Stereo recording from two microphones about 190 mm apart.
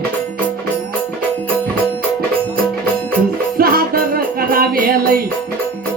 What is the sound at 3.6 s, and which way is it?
Music, 50° right (ahead or behind).